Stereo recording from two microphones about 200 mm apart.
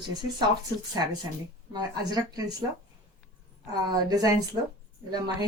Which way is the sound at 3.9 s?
20° right (ahead or behind).